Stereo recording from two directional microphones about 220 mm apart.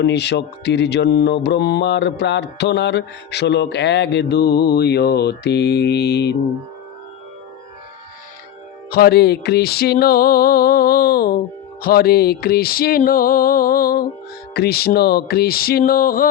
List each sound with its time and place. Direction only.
0.0 s mantra: 50° left (ahead or behind)
8.9 s mantra: 45° left (ahead or behind)